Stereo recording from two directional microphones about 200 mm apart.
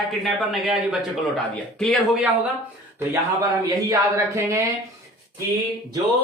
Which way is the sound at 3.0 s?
15° right (ahead or behind).